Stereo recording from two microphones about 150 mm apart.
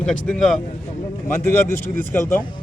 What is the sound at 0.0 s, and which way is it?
Speech, 5° left (ahead or behind).